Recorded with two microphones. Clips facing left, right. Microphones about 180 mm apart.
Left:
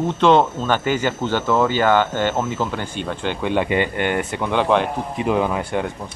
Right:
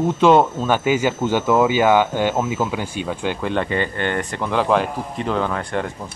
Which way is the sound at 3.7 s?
15° left (ahead or behind).